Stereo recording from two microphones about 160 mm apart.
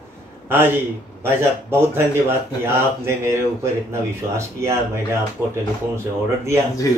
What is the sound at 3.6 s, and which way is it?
Speech, 15° right (ahead or behind).